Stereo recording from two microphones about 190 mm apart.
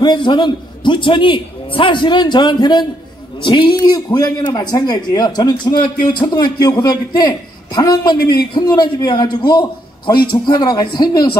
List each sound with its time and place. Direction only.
0.0 s a man's voice: 25° left (ahead or behind)